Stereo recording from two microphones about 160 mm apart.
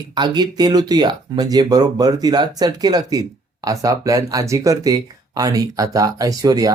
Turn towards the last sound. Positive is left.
turn(degrees=-20)  # may be behind; listen again after turning